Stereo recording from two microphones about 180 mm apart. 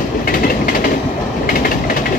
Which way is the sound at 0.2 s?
50° left (ahead or behind).